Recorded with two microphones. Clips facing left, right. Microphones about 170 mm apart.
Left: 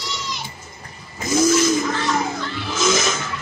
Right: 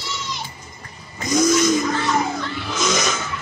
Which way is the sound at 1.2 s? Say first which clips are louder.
Even; 5° left (ahead or behind).